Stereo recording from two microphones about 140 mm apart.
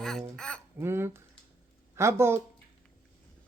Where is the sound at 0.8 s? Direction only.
15° right (ahead or behind).